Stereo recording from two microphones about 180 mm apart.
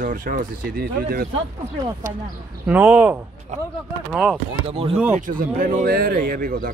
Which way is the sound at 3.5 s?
40° right (ahead or behind).